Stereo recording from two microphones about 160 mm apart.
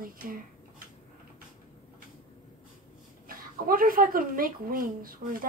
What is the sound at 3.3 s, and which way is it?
Speech, 65° right (ahead or behind).